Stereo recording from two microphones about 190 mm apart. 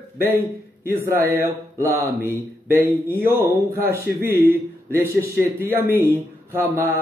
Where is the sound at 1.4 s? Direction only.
15° right (ahead or behind).